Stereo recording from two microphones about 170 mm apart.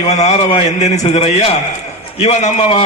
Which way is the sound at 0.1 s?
40° left (ahead or behind).